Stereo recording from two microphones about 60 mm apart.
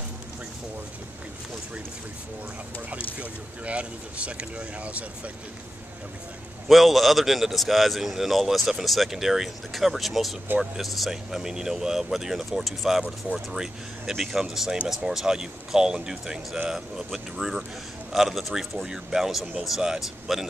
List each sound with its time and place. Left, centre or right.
2.9 s speech: right
6.7 s a man's voice: centre